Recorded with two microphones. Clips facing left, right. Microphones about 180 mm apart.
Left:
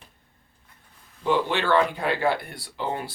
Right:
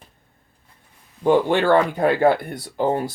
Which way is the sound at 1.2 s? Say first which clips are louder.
Right 7 dB; 50° right (ahead or behind).